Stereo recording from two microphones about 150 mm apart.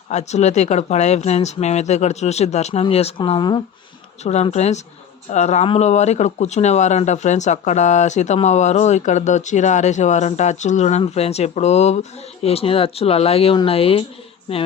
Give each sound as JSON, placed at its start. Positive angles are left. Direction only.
{"t": 0.1, "sound": "speech", "side_deg": 50}
{"t": 4.2, "sound": "speech", "side_deg": 50}